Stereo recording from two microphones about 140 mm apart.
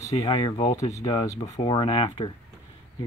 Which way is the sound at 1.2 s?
20° left (ahead or behind).